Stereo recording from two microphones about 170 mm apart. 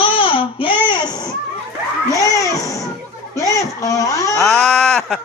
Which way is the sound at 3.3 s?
20° left (ahead or behind).